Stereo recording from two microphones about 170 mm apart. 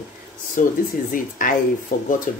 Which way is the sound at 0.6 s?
50° left (ahead or behind).